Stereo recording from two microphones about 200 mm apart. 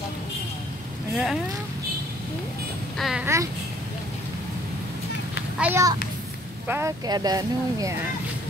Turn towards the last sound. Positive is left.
turn(degrees=-20)  # may be behind; listen again after turning